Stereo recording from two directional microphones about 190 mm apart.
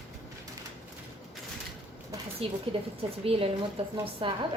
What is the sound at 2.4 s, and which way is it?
A woman's voice, 30° right (ahead or behind).